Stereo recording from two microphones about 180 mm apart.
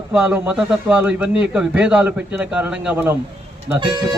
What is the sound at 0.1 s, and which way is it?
A man's voice, 10° right (ahead or behind).